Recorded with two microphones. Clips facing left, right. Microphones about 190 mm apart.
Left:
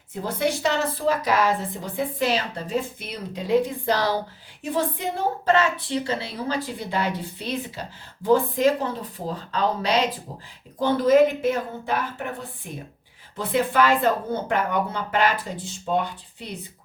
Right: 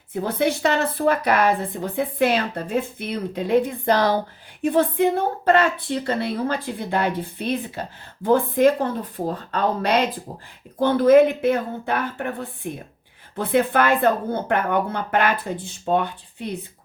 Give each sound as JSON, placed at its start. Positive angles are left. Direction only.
{"t": 0.3, "sound": "a woman's voice", "side_deg": -60}